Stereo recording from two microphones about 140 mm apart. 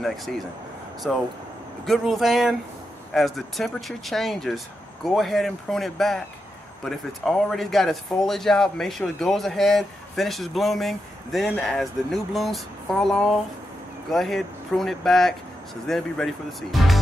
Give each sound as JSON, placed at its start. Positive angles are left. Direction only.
{"t": 0.0, "sound": "speech", "side_deg": 0}
{"t": 16.7, "sound": "music", "side_deg": 0}